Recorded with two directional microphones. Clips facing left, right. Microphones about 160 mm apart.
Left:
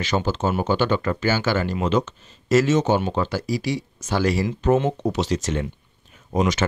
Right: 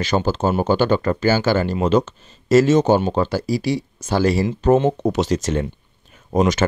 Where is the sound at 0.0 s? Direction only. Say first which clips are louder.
Right 4 dB; 40° right (ahead or behind).